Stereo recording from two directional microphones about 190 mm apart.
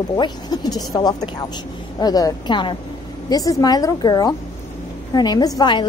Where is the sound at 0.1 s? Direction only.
20° left (ahead or behind).